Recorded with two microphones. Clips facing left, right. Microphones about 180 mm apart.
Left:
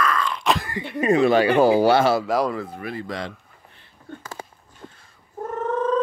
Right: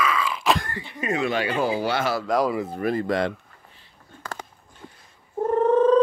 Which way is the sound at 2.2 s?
Centre (ahead or behind).